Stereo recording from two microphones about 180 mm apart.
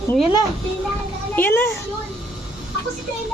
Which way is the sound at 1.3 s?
10° left (ahead or behind).